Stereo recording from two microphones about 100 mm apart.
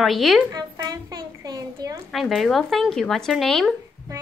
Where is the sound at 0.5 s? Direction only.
40° right (ahead or behind).